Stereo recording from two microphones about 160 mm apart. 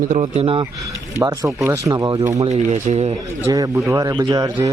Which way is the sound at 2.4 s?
45° right (ahead or behind).